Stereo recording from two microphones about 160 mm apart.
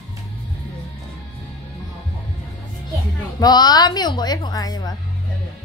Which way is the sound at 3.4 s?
25° left (ahead or behind).